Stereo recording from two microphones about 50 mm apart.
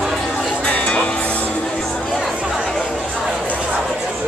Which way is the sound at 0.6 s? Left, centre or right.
Centre.